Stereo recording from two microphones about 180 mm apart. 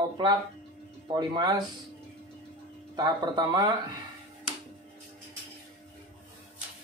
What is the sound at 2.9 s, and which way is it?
Speech, 20° right (ahead or behind).